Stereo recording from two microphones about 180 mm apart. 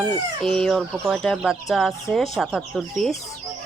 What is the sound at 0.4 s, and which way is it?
Speech, centre (ahead or behind).